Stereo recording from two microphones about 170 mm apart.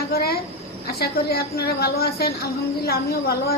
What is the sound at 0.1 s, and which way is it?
Cricket, 65° left (ahead or behind).